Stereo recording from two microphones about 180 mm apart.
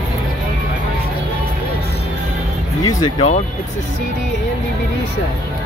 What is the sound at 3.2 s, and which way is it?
Speech, 40° left (ahead or behind).